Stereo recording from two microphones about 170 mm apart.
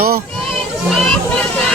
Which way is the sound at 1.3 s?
5° left (ahead or behind).